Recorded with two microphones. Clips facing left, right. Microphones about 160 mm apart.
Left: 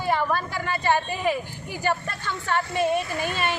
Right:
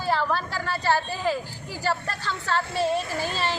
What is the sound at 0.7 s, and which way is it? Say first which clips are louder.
A woman's voice: left 1 dB; 15° left (ahead or behind).